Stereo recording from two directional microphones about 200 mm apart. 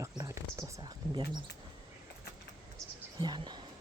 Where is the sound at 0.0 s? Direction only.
15° right (ahead or behind).